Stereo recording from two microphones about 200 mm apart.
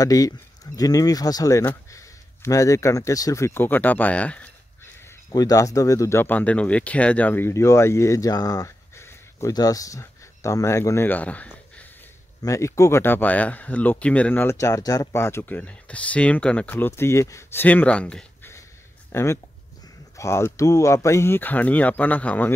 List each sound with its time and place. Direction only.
0.0 s speech: 15° left (ahead or behind)
5.3 s speech: 20° left (ahead or behind)